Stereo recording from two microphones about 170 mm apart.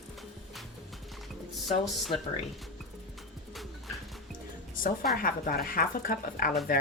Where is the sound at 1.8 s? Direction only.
Centre (ahead or behind).